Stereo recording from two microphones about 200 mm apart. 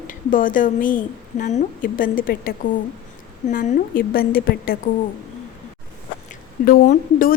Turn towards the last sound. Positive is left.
turn(degrees=45)  # may be behind; listen again after turning